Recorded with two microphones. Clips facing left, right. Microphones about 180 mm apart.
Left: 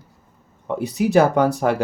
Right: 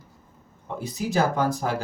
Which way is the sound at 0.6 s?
65° left (ahead or behind).